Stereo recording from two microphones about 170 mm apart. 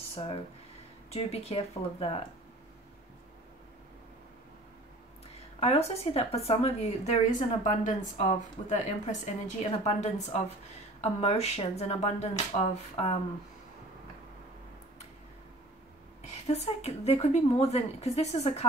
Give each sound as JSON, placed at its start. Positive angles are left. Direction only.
{"t": 1.1, "sound": "speech", "side_deg": 35}
{"t": 5.6, "sound": "speech", "side_deg": 35}
{"t": 16.2, "sound": "speech", "side_deg": 40}